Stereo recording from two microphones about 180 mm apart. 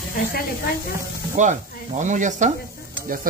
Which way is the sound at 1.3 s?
45° right (ahead or behind).